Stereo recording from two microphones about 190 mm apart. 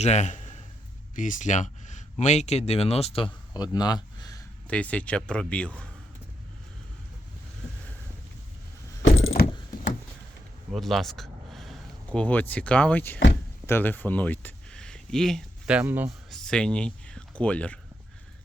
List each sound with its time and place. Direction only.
0.0 s a man's voice: 35° left (ahead or behind); by 4.4 s 20° left (ahead or behind)
4.7 s speech: 5° left (ahead or behind)
9.0 s coin: 90° left
10.7 s speech: centre (ahead or behind)
16.3 s speech: 5° left (ahead or behind)